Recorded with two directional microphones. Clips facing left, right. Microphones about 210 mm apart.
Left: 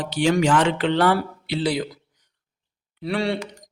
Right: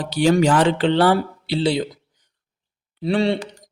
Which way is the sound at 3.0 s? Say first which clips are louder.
Right 5 dB; 25° right (ahead or behind).